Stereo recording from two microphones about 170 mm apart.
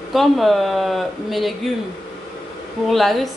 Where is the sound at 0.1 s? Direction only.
Centre (ahead or behind).